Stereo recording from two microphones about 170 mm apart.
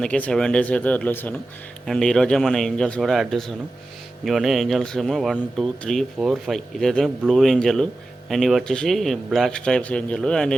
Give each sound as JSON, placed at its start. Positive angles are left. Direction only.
{"t": 0.0, "sound": "speech", "side_deg": 5}